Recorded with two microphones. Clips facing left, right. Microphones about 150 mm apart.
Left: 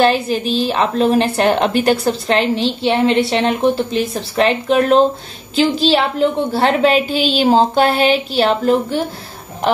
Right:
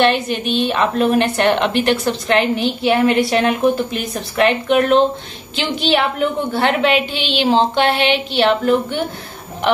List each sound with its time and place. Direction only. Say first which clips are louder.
0.0 s a woman's voice: left 2 dB; 35° left (ahead or behind)